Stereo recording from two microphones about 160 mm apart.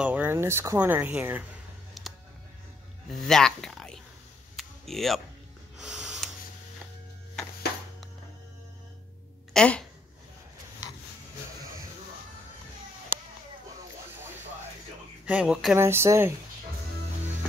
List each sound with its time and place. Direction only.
0.0 s speech: 10° right (ahead or behind)
2.0 s music: centre (ahead or behind)
3.1 s speech: centre (ahead or behind)
4.6 s a sound: centre (ahead or behind)
5.8 s snort: 5° right (ahead or behind)
9.5 s speech: 5° left (ahead or behind)
15.2 s speech: 5° right (ahead or behind)
15.8 s speech: 15° right (ahead or behind)